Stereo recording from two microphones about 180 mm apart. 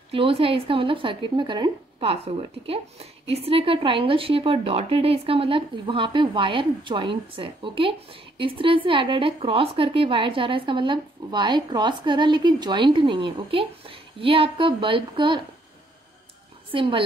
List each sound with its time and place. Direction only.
0.1 s speech: 30° right (ahead or behind)
16.7 s speech: 30° right (ahead or behind)